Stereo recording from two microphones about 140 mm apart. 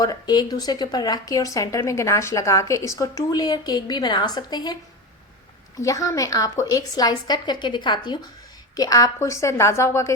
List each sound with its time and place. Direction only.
0.0 s speech: 30° left (ahead or behind)